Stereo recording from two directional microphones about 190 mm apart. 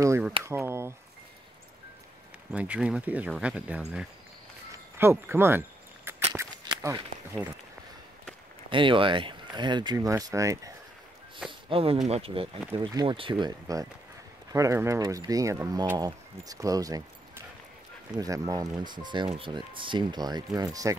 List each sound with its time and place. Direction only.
0.0 s speech: 15° right (ahead or behind)
2.5 s speech: 5° right (ahead or behind)
4.9 s a sound: 10° right (ahead or behind)
8.6 s speech: 25° right (ahead or behind)
11.7 s speech: 30° right (ahead or behind)
18.1 s speech: 15° right (ahead or behind)